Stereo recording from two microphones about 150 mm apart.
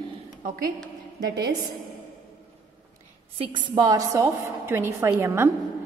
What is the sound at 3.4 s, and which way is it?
A woman's voice, 35° right (ahead or behind).